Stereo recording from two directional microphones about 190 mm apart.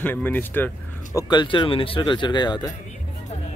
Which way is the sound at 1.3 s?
25° left (ahead or behind).